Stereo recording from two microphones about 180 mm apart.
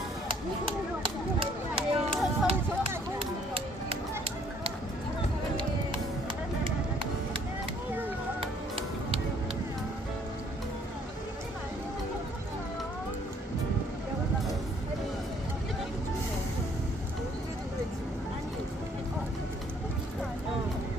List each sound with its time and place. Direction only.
1.0 s a sound: 30° right (ahead or behind)
3.2 s chop: 30° right (ahead or behind)
8.4 s music: 30° right (ahead or behind)